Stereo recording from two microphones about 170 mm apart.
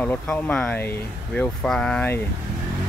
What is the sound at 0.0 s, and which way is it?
Speech, 10° left (ahead or behind).